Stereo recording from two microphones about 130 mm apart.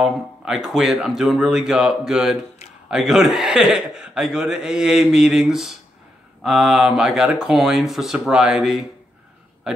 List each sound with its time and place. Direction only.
0.0 s a man's voice: centre (ahead or behind)